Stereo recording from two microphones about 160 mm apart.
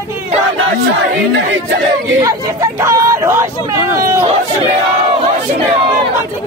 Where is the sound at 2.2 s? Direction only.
20° right (ahead or behind).